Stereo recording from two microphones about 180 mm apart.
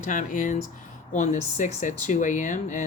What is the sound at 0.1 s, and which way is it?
Speech, 45° left (ahead or behind).